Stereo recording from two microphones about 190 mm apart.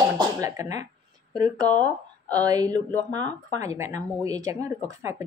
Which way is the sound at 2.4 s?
20° right (ahead or behind).